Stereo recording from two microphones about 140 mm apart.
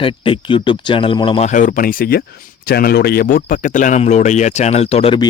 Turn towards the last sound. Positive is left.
turn(degrees=45)  # may be behind; listen again after turning